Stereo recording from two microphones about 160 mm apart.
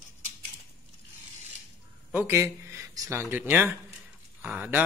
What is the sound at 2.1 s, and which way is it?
Speech, 15° right (ahead or behind).